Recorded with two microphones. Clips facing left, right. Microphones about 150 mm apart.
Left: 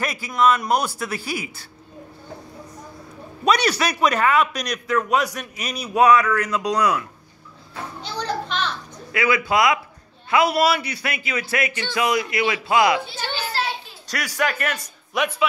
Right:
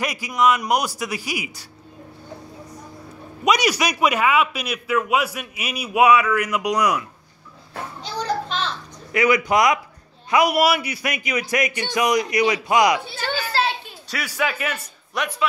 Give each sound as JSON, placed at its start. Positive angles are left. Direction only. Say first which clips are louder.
{"t": 0.0, "sound": "a man's voice", "louder": "even", "side_deg": -15}
{"t": 3.4, "sound": "a man's voice", "louder": "even", "side_deg": -10}
{"t": 8.0, "sound": "children playing", "louder": "right 2 dB", "side_deg": -35}
{"t": 9.1, "sound": "a man's voice", "louder": "right 2 dB", "side_deg": -20}
{"t": 14.1, "sound": "speech", "louder": "left 1 dB", "side_deg": -5}